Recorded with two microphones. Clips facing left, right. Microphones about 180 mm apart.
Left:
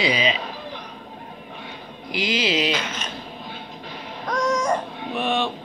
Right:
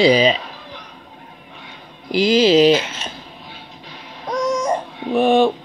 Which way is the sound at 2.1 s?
35° right (ahead or behind).